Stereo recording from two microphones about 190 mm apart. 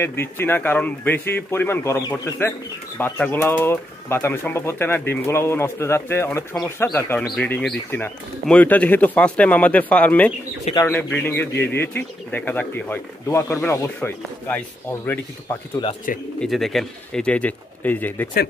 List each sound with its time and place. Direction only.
0.0 s speech: 10° left (ahead or behind)
15.4 s speech: 25° left (ahead or behind)
16.3 s speech: centre (ahead or behind)